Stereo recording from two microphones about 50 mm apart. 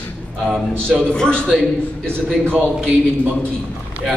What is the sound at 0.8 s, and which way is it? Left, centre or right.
Speech, centre.